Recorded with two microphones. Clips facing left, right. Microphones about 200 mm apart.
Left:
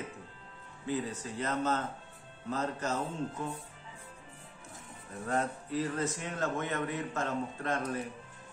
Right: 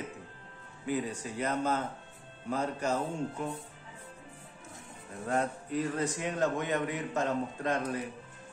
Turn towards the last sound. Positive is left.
turn(degrees=-15)  # may be behind; listen again after turning